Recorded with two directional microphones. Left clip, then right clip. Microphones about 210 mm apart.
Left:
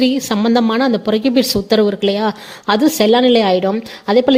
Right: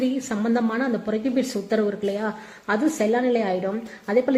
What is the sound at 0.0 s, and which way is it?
A woman's voice, 35° left (ahead or behind).